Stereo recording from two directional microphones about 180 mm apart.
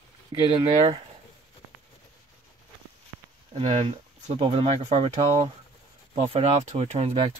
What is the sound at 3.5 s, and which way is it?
Speech, 35° right (ahead or behind).